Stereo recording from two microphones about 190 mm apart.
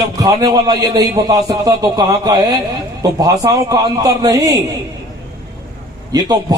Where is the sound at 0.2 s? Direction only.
20° right (ahead or behind).